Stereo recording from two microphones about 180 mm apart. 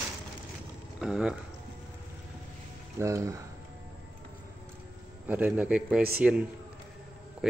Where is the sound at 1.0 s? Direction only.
5° right (ahead or behind).